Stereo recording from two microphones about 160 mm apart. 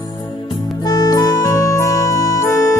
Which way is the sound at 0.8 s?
25° left (ahead or behind).